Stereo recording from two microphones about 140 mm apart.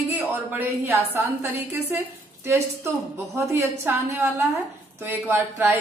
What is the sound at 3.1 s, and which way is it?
Speech, 20° right (ahead or behind).